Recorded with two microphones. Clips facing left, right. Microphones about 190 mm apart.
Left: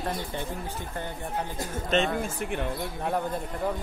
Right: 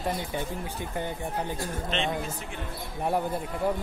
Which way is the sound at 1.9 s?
45° left (ahead or behind).